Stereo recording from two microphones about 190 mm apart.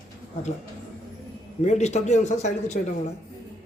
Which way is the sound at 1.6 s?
35° left (ahead or behind).